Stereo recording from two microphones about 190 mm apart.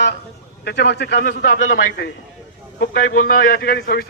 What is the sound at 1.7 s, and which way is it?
Speech, 60° left (ahead or behind).